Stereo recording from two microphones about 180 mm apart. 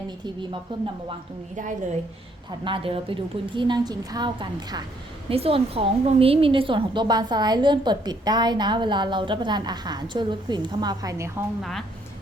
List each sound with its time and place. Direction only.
0.7 s a woman's voice: 25° right (ahead or behind)
2.6 s a woman's voice: 30° right (ahead or behind)
11.6 s a woman's voice: centre (ahead or behind)